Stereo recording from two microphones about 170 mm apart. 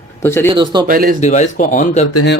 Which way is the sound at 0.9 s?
55° right (ahead or behind).